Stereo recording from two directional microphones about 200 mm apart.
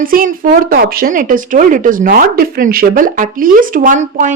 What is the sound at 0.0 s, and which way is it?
A woman's voice, 45° right (ahead or behind).